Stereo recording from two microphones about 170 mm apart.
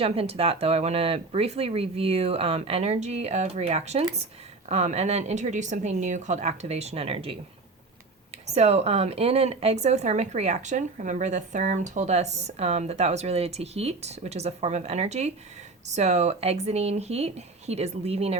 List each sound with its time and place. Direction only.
0.0 s speech: 35° right (ahead or behind)
8.4 s speech: 40° right (ahead or behind)